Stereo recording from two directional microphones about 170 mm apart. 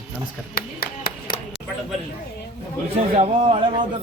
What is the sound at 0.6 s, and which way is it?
Clapping, 60° left (ahead or behind).